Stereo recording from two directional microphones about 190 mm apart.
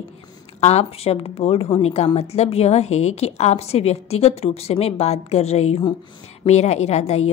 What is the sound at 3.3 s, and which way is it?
A woman's voice, 35° left (ahead or behind).